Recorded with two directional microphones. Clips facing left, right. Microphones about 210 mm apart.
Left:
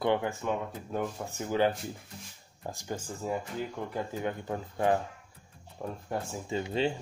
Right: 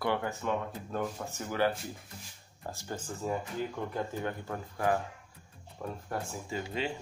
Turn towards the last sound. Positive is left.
turn(degrees=30)  # may be behind; listen again after turning